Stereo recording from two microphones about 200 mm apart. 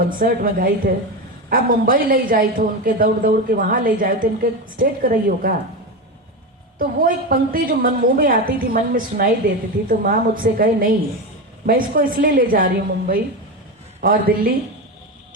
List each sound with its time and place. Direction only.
0.0 s a woman's voice: 45° right (ahead or behind)
6.7 s a woman's voice: 45° right (ahead or behind)